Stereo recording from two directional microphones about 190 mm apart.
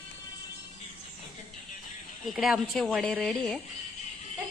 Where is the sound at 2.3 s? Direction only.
Centre (ahead or behind).